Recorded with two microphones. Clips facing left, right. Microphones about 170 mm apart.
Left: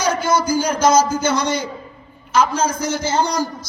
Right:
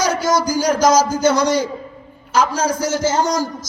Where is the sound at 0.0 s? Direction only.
40° right (ahead or behind).